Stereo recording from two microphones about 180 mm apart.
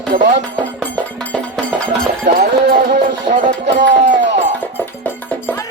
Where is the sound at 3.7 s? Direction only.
75° right (ahead or behind).